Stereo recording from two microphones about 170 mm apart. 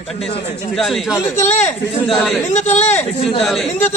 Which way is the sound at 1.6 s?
10° left (ahead or behind).